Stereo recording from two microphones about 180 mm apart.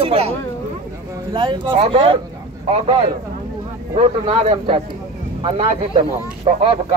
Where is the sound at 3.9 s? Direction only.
35° right (ahead or behind).